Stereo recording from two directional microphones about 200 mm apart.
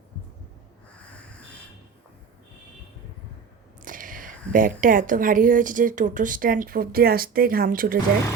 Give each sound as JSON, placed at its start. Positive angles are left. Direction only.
{"t": 3.8, "sound": "speech", "side_deg": -45}